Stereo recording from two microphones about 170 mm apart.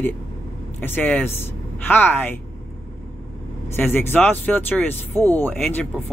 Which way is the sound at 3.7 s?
10° left (ahead or behind).